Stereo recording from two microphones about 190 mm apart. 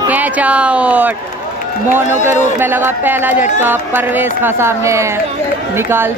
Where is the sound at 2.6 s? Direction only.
10° right (ahead or behind).